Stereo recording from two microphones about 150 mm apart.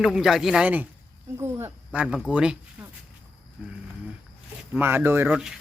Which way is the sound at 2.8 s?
10° right (ahead or behind).